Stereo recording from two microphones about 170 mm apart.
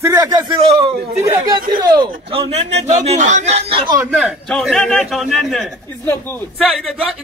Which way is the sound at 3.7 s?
30° right (ahead or behind).